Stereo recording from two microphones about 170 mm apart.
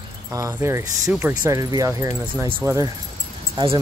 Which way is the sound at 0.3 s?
20° right (ahead or behind).